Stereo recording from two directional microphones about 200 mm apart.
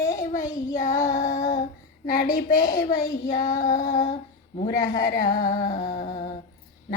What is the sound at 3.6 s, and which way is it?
Humming, 40° left (ahead or behind).